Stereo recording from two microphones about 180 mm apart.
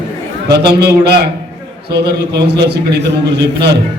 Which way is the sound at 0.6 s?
65° right (ahead or behind).